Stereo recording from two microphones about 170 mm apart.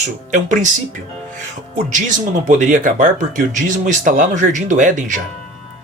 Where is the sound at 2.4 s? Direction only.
50° right (ahead or behind).